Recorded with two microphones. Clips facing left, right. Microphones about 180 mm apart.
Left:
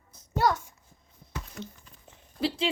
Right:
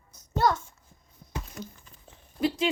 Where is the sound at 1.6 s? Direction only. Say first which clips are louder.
Even; 30° left (ahead or behind).